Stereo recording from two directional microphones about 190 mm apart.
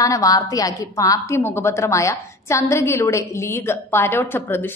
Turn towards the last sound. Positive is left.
turn(degrees=10)  # may be behind; listen again after turning